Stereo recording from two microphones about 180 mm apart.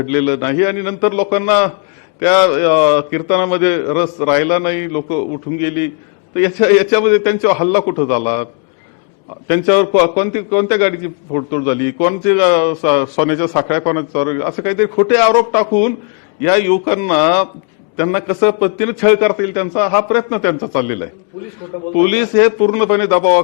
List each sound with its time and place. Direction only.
0.0 s a man's voice: 15° left (ahead or behind)
9.5 s a man's voice: 15° left (ahead or behind)